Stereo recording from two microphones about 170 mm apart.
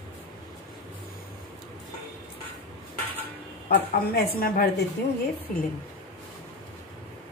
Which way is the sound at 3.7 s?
65° left (ahead or behind).